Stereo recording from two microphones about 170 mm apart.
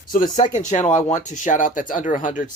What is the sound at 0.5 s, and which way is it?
Speech, 45° left (ahead or behind).